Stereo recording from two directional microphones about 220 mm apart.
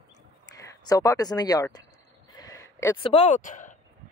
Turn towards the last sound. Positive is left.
turn(degrees=35)  # may be behind; listen again after turning